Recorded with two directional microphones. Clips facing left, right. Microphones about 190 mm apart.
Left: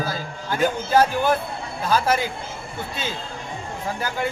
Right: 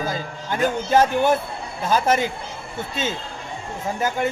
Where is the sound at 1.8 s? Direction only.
20° right (ahead or behind).